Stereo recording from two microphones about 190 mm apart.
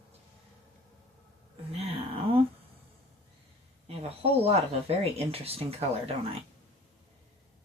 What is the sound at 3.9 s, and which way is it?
Speech, 30° right (ahead or behind).